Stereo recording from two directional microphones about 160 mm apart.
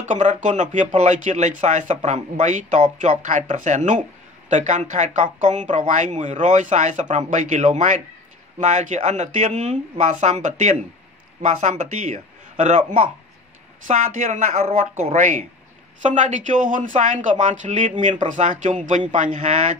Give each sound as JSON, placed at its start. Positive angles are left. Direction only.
{"t": 0.0, "sound": "a man's voice", "side_deg": -50}
{"t": 13.8, "sound": "speech", "side_deg": -50}
{"t": 15.1, "sound": "speech", "side_deg": -55}